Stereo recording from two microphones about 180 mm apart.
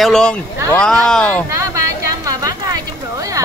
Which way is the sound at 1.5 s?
15° right (ahead or behind).